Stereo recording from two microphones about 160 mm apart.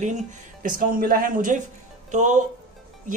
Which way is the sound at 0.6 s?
65° right (ahead or behind).